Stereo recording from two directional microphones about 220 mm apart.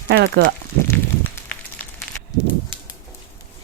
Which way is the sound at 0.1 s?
45° right (ahead or behind).